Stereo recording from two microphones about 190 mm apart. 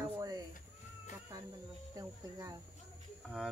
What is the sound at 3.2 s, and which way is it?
Speech, centre (ahead or behind).